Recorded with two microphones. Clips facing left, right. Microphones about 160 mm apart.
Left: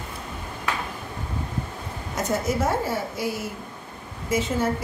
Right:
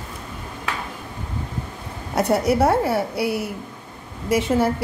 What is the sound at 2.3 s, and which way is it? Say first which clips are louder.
A woman's voice: right 6 dB; 70° right (ahead or behind).